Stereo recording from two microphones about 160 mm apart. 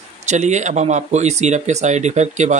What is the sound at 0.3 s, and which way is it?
Speech, 45° right (ahead or behind).